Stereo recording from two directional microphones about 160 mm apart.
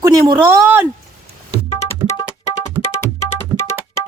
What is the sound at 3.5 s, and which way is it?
Tabla, 15° left (ahead or behind).